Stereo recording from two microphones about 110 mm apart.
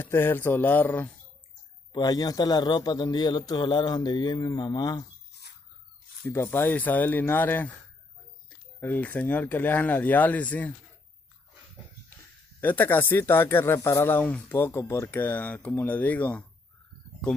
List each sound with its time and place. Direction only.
0.0 s speech: 20° left (ahead or behind)
1.9 s a man's voice: 40° left (ahead or behind)
6.2 s speech: 20° left (ahead or behind)
8.7 s speech: 15° left (ahead or behind)
12.5 s speech: 15° left (ahead or behind)